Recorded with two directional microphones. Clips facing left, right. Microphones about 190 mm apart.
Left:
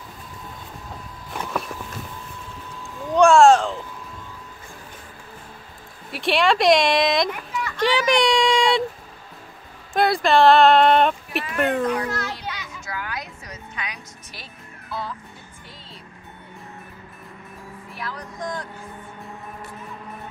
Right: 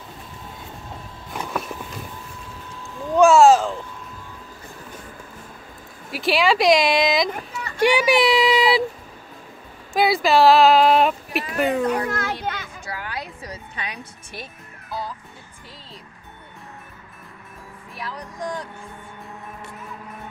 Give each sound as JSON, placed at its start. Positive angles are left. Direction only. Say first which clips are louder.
{"t": 3.2, "sound": "speech", "louder": "even", "side_deg": 0}
{"t": 6.1, "sound": "speech", "louder": "even", "side_deg": 0}
{"t": 7.2, "sound": "a sound", "louder": "left 1 dB", "side_deg": -35}
{"t": 7.7, "sound": "speech", "louder": "right 3 dB", "side_deg": -10}
{"t": 9.9, "sound": "speech", "louder": "even", "side_deg": -5}
{"t": 11.9, "sound": "children playing", "louder": "right 2 dB", "side_deg": -50}
{"t": 12.8, "sound": "music", "louder": "left 1 dB", "side_deg": -30}
{"t": 14.3, "sound": "music", "louder": "right 6 dB", "side_deg": -45}
{"t": 18.4, "sound": "vehicle", "louder": "right 1 dB", "side_deg": -15}